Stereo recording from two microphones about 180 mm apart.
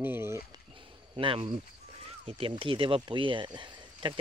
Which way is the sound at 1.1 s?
30° right (ahead or behind).